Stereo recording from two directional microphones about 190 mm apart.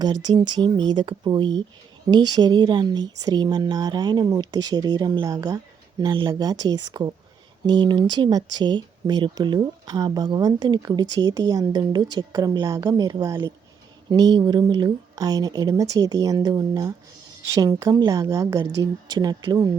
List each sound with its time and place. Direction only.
0.0 s a woman's voice: 20° right (ahead or behind)